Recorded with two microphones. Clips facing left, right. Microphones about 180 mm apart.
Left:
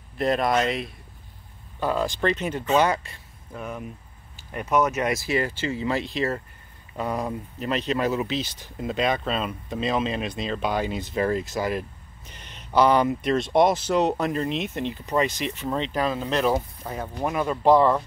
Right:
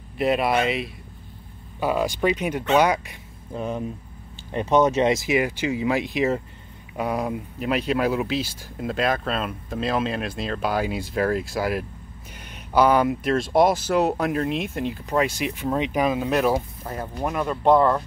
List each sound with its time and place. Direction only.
0.2 s speech: 5° right (ahead or behind)
3.5 s speech: 30° right (ahead or behind); by 18.0 s centre (ahead or behind)